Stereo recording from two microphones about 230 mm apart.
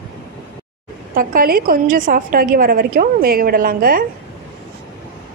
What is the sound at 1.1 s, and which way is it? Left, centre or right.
Speech, right.